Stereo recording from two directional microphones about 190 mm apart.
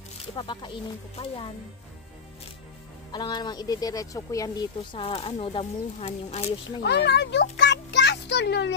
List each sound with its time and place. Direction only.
0.4 s speech: 25° left (ahead or behind)
3.1 s speech: 25° left (ahead or behind)
6.8 s speech: 60° left (ahead or behind)